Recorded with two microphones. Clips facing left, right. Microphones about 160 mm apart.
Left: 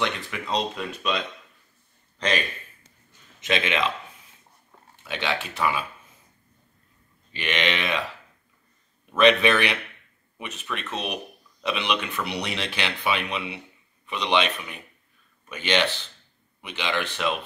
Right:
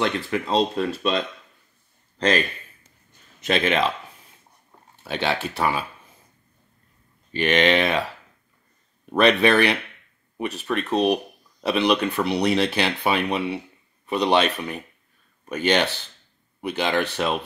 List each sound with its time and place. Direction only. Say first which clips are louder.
0.0 s speech: right 5 dB; 35° right (ahead or behind)
3.4 s speech: right 4 dB; 40° right (ahead or behind)
5.0 s speech: right 4 dB; 35° right (ahead or behind)
7.3 s speech: right 8 dB; 40° right (ahead or behind)
9.1 s speech: right 2 dB; 35° right (ahead or behind)